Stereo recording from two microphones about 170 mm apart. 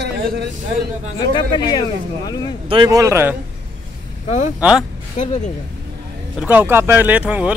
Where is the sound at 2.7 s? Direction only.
25° right (ahead or behind).